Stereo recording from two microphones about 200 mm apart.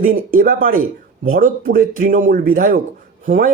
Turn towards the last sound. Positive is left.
turn(degrees=-40)  # may be behind; listen again after turning